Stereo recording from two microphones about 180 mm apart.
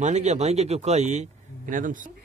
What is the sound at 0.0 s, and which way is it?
A man's voice, 40° right (ahead or behind).